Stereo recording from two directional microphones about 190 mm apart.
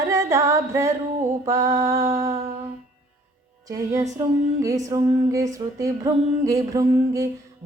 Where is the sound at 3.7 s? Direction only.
15° right (ahead or behind).